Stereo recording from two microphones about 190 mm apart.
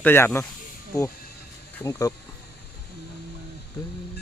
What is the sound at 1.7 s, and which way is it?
Speech, 15° left (ahead or behind).